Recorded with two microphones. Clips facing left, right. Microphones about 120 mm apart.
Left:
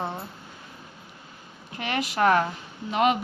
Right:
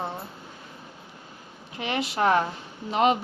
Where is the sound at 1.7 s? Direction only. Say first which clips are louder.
Left 1 dB; 25° right (ahead or behind).